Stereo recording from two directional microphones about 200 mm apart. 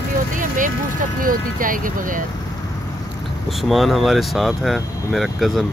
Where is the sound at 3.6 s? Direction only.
Centre (ahead or behind).